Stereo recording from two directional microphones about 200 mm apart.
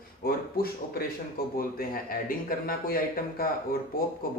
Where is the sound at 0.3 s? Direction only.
50° left (ahead or behind).